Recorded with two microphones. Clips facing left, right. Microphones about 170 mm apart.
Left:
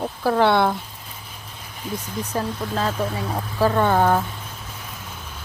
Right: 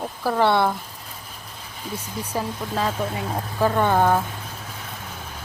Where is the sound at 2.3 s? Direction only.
10° right (ahead or behind).